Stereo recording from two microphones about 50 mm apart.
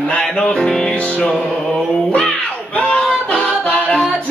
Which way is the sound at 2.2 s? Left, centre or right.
Centre.